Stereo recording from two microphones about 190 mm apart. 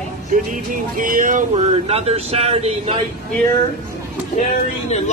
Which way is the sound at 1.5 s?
30° right (ahead or behind).